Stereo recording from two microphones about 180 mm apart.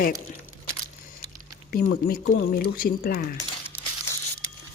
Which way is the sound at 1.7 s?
55° left (ahead or behind).